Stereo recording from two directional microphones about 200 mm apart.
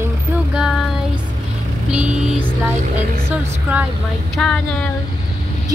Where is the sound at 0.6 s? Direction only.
Centre (ahead or behind).